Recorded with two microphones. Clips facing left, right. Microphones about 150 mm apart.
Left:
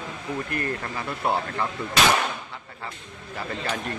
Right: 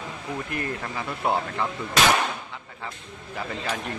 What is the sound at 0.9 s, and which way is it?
Speech, centre (ahead or behind).